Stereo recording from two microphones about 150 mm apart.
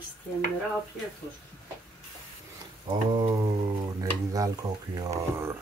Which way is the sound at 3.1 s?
25° right (ahead or behind).